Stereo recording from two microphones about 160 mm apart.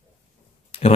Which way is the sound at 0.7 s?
35° left (ahead or behind).